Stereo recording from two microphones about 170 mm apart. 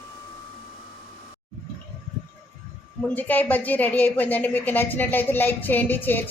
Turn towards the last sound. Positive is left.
turn(degrees=10)  # may be behind; listen again after turning